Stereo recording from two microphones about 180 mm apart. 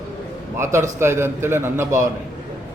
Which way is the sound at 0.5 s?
15° right (ahead or behind).